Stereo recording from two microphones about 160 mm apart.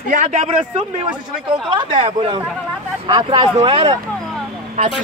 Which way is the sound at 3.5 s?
40° right (ahead or behind).